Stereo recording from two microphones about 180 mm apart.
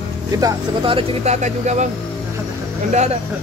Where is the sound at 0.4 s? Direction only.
25° right (ahead or behind); by 1.9 s 40° right (ahead or behind).